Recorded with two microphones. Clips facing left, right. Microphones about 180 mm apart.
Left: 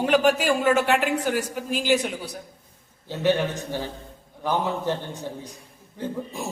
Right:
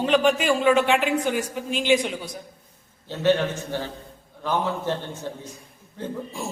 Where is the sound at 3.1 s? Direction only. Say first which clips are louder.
Right 1 dB; 15° left (ahead or behind).